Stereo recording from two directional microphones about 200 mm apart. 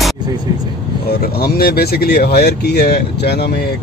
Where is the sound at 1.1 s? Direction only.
50° left (ahead or behind).